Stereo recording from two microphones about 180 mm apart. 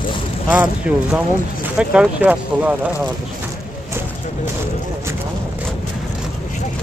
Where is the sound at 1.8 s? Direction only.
5° right (ahead or behind).